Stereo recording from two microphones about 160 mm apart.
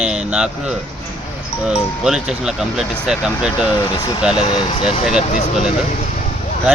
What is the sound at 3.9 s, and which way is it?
Speech, 25° left (ahead or behind).